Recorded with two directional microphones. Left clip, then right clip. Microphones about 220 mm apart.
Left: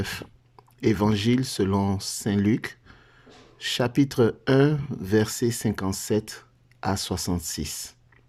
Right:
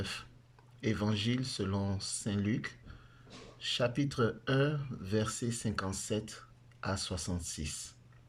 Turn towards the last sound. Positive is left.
turn(degrees=40)  # may be behind; listen again after turning